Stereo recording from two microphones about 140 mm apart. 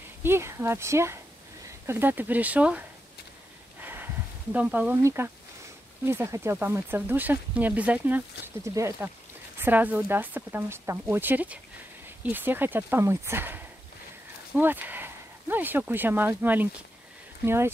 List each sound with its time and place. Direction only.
0.2 s speech: 20° right (ahead or behind)
3.8 s a sound: 15° right (ahead or behind)
6.0 s speech: 20° right (ahead or behind)